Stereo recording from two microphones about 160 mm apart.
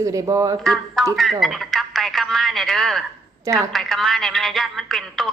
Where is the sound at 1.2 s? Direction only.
Centre (ahead or behind).